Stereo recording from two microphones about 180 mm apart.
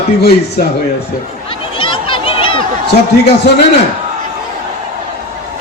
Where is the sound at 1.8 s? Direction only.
30° left (ahead or behind).